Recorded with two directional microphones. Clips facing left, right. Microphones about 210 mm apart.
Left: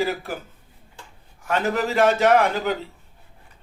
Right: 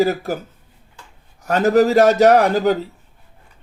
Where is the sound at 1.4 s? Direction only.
40° right (ahead or behind).